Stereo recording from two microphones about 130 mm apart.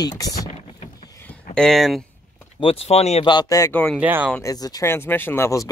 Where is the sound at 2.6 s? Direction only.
50° left (ahead or behind).